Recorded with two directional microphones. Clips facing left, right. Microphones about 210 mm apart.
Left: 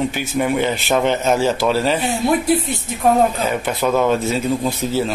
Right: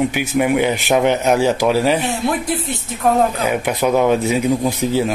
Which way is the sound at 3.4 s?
15° right (ahead or behind).